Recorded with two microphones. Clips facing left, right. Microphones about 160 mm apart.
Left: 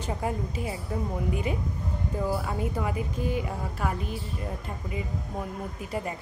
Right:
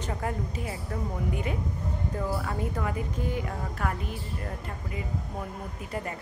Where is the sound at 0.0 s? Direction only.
20° left (ahead or behind).